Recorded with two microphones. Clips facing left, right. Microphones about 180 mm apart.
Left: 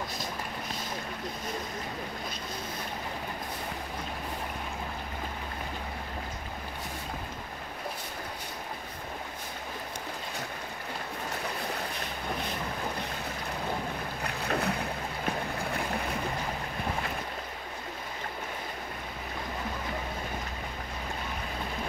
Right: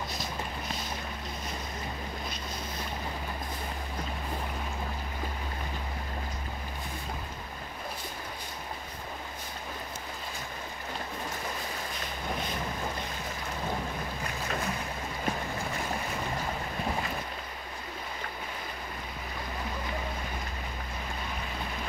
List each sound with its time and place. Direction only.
14.2 s boat: 65° left (ahead or behind)